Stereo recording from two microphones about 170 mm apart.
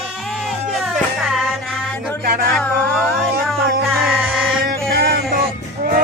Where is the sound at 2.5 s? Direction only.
5° left (ahead or behind).